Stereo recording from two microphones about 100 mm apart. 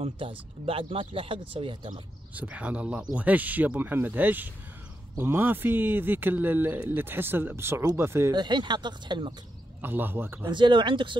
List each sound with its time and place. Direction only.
0.0 s speech: 65° right (ahead or behind)
2.3 s a man's voice: 15° right (ahead or behind)
8.3 s speech: 50° right (ahead or behind)
9.8 s a man's voice: 20° right (ahead or behind)
10.5 s speech: 50° right (ahead or behind)